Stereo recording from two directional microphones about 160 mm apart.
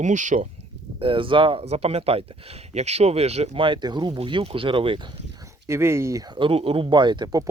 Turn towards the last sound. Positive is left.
turn(degrees=-25)  # may be behind; listen again after turning